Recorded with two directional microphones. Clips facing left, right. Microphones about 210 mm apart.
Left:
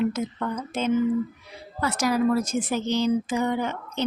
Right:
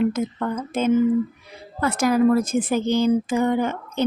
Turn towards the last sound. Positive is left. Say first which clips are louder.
# right 5 dB
turn(degrees=-50)  # may be behind; listen again after turning